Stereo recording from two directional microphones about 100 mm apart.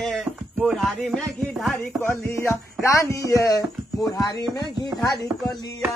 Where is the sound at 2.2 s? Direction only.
30° left (ahead or behind).